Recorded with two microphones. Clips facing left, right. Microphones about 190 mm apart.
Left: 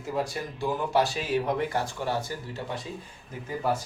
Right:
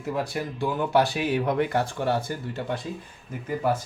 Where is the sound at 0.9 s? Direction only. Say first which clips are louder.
Right 3 dB; 60° right (ahead or behind).